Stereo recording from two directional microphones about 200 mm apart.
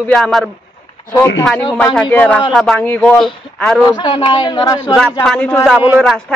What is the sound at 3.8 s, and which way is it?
A man's voice, 20° left (ahead or behind).